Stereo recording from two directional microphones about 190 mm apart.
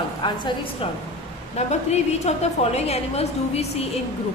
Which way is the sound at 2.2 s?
35° left (ahead or behind).